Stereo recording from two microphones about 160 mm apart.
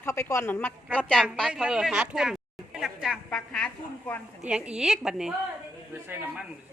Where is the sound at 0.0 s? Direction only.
15° left (ahead or behind).